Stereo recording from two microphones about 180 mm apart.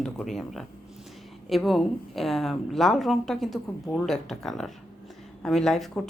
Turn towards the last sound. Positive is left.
turn(degrees=5)  # may be behind; listen again after turning